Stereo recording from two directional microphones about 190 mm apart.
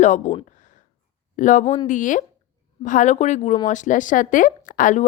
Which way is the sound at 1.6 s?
20° left (ahead or behind).